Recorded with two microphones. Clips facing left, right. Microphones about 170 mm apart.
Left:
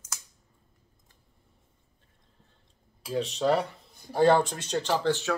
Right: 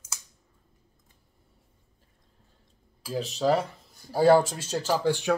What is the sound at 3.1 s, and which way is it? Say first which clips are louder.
Speech: right 1 dB; centre (ahead or behind).